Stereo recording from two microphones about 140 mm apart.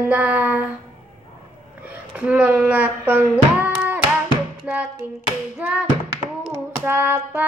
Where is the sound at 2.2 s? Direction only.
10° right (ahead or behind).